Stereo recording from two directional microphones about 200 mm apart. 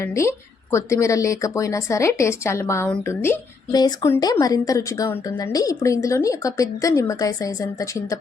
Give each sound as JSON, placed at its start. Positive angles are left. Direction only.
{"t": 0.0, "sound": "speech", "side_deg": 15}